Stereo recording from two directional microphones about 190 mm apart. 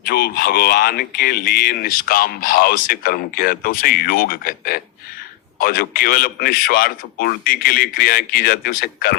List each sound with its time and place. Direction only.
0.1 s speech: 55° left (ahead or behind)